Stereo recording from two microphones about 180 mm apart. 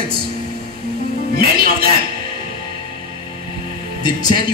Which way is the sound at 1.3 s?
55° right (ahead or behind).